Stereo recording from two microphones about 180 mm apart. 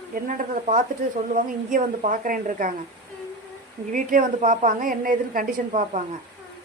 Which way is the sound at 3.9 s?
50° right (ahead or behind).